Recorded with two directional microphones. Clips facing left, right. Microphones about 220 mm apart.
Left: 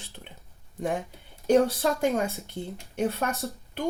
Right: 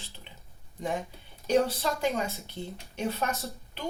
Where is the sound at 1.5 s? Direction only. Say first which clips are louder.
Left 4 dB; 45° left (ahead or behind).